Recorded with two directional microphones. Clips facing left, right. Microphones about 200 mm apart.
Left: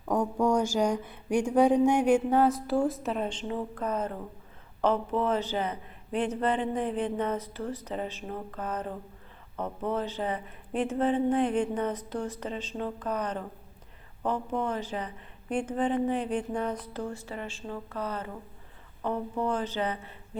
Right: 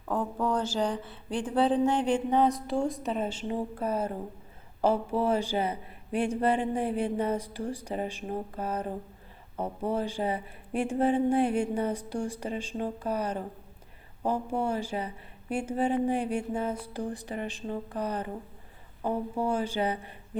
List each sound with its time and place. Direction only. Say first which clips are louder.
0.0 s speech: left 3 dB; 15° left (ahead or behind); by 20.1 s 10° right (ahead or behind)